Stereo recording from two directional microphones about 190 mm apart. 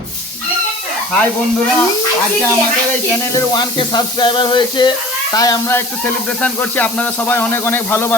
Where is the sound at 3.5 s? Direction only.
25° left (ahead or behind).